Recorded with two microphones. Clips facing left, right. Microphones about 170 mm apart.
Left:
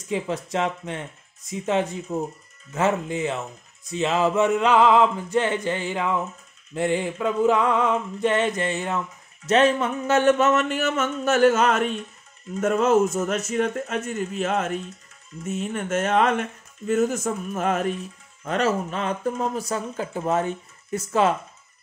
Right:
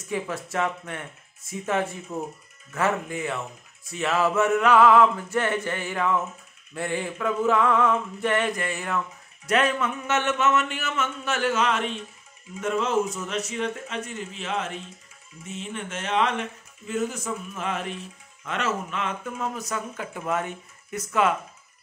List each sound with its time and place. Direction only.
0.1 s music: 20° left (ahead or behind)
9.5 s speech: 30° left (ahead or behind)